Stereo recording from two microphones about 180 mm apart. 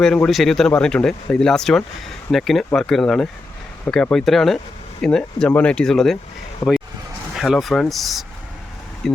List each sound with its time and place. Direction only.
0.0 s speech: 5° left (ahead or behind)
6.6 s speech: 15° left (ahead or behind)
7.3 s speech: centre (ahead or behind)